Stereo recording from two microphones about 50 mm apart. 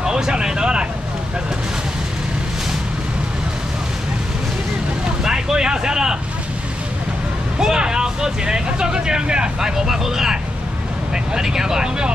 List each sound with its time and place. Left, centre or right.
0.0 s a sound: centre
5.2 s vehicle: centre
7.5 s speech: centre